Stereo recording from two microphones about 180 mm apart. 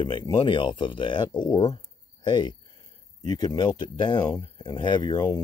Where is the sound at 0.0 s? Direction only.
25° left (ahead or behind).